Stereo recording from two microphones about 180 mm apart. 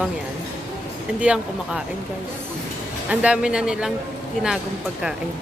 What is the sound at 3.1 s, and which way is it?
Speech, 5° right (ahead or behind).